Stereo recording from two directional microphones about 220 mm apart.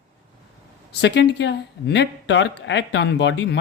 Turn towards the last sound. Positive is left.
turn(degrees=55)  # may be behind; listen again after turning